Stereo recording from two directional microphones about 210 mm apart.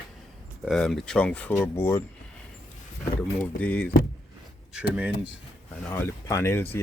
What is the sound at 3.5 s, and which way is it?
Speech, 10° left (ahead or behind).